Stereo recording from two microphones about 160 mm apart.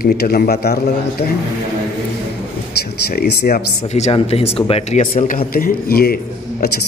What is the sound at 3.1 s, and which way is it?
Speech, 85° left.